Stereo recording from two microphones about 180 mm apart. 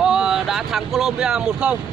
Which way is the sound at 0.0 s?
5° right (ahead or behind).